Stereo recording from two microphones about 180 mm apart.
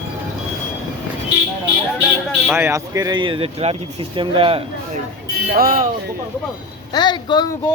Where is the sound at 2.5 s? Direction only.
15° right (ahead or behind); by 4.6 s 30° right (ahead or behind).